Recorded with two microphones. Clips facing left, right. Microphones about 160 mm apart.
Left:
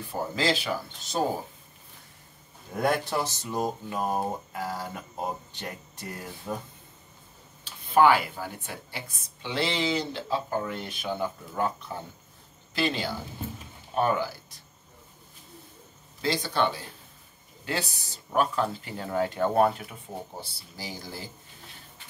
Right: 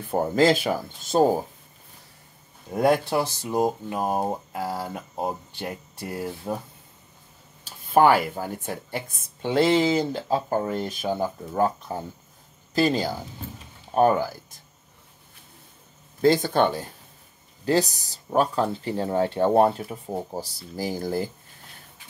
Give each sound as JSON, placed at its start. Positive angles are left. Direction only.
{"t": 0.0, "sound": "speech", "side_deg": -50}
{"t": 2.7, "sound": "speech", "side_deg": -25}
{"t": 7.6, "sound": "speech", "side_deg": -45}
{"t": 16.2, "sound": "speech", "side_deg": -50}